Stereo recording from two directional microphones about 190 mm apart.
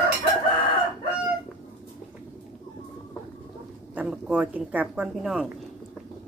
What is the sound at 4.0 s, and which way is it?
A woman's voice, 5° right (ahead or behind).